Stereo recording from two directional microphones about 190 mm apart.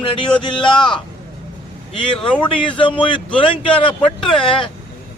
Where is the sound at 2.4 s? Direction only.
25° left (ahead or behind).